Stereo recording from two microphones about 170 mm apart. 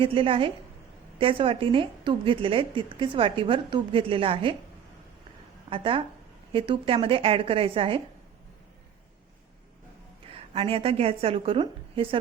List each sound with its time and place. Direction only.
0.0 s a woman's voice: 30° right (ahead or behind)
5.7 s a woman's voice: 30° right (ahead or behind)
10.3 s a woman's voice: 35° right (ahead or behind)